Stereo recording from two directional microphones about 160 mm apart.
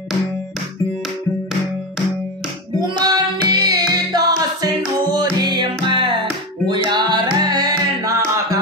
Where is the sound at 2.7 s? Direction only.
30° right (ahead or behind).